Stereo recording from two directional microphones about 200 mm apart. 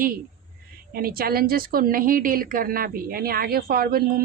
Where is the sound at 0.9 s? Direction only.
50° right (ahead or behind).